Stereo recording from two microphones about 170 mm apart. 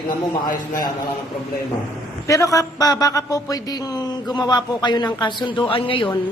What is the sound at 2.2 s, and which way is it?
Speech, 20° left (ahead or behind).